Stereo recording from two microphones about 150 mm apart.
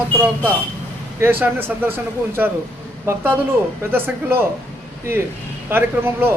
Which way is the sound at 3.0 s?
15° right (ahead or behind).